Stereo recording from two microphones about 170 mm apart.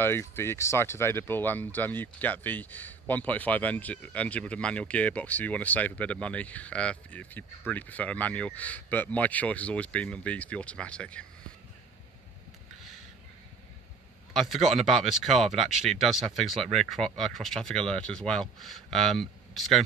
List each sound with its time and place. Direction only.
0.0 s a man's voice: 15° left (ahead or behind)
14.3 s speech: centre (ahead or behind)